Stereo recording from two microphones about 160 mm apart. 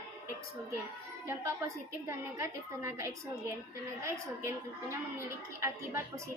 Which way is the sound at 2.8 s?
20° right (ahead or behind).